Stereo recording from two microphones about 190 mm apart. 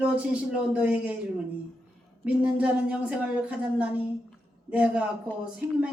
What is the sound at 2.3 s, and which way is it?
A man's voice, 5° right (ahead or behind).